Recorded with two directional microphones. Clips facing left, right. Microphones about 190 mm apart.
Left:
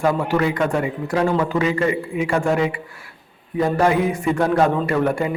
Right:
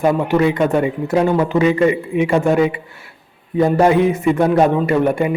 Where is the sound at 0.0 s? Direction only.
20° right (ahead or behind).